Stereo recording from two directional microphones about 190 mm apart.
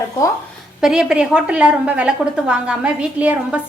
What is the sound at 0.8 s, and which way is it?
A woman's voice, 5° right (ahead or behind).